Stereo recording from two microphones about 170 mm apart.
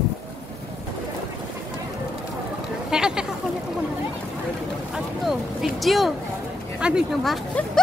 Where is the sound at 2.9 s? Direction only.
5° right (ahead or behind).